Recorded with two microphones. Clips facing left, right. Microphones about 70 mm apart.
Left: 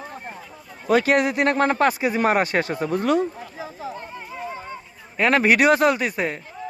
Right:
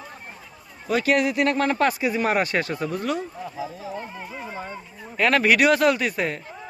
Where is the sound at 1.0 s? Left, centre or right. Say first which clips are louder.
Left 1 dB; left.